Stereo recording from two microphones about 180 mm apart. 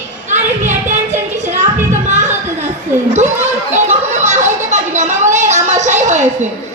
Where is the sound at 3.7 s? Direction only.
40° right (ahead or behind).